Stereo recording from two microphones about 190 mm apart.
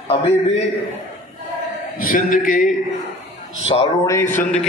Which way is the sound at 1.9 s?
45° left (ahead or behind).